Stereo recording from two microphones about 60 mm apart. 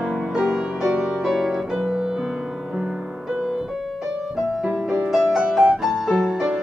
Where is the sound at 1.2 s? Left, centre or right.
Centre.